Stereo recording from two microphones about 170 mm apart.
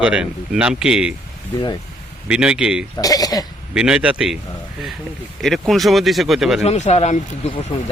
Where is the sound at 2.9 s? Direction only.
20° left (ahead or behind).